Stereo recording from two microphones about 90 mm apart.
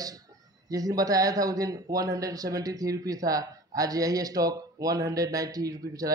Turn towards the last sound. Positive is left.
turn(degrees=-40)  # may be behind; listen again after turning